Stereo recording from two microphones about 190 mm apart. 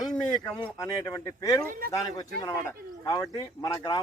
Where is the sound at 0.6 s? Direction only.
20° left (ahead or behind).